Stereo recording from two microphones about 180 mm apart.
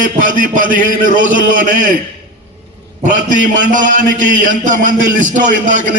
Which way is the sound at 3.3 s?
45° right (ahead or behind).